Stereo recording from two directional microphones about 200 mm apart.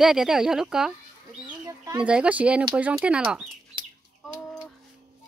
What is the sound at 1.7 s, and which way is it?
Chicken, 15° right (ahead or behind).